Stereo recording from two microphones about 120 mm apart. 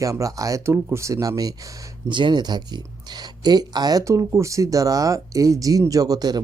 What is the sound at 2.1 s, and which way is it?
Speech, 40° right (ahead or behind).